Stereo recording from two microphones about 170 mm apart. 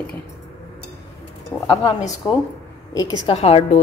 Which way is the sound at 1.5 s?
20° left (ahead or behind).